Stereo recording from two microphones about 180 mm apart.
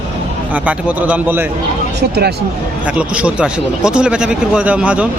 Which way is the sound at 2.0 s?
65° right (ahead or behind).